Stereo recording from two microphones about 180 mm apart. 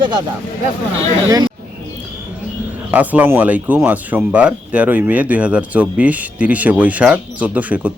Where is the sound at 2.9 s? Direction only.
10° right (ahead or behind).